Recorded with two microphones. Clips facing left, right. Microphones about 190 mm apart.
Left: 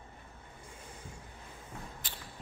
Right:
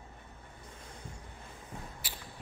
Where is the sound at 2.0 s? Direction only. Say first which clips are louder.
Right 1 dB; 10° right (ahead or behind).